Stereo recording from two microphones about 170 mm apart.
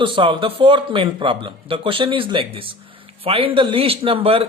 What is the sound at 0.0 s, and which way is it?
Speech, 30° right (ahead or behind).